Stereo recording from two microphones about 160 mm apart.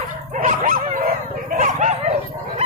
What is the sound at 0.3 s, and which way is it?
Dog, 55° right (ahead or behind).